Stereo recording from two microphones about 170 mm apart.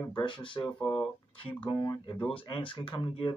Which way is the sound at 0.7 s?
5° left (ahead or behind).